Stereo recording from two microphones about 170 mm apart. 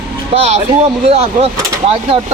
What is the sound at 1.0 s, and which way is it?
Speech, 35° right (ahead or behind).